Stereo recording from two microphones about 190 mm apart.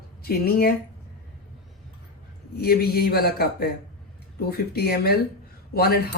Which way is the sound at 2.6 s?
55° left (ahead or behind).